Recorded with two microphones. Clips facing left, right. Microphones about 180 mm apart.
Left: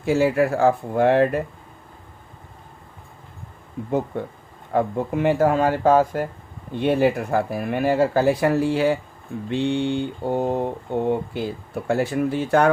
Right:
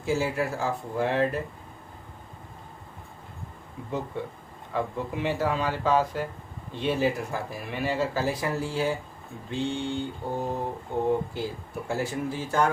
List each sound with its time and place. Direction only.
0.0 s speech: 65° left (ahead or behind)
4.1 s speech: 55° left (ahead or behind)
9.5 s mantra: 65° left (ahead or behind)
11.3 s speech: 65° left (ahead or behind)